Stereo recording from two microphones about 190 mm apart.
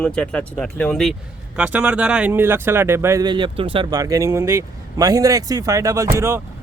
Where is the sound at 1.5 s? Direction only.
10° right (ahead or behind).